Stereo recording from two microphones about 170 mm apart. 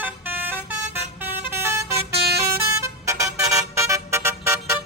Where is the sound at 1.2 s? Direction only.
15° right (ahead or behind).